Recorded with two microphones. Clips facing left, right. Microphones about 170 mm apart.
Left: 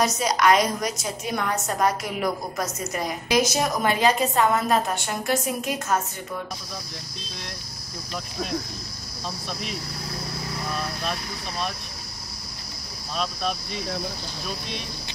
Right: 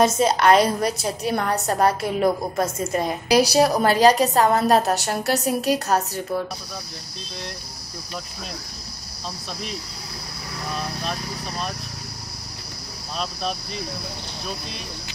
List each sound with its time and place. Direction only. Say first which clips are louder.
0.2 s a woman's voice: right 4 dB; 30° right (ahead or behind)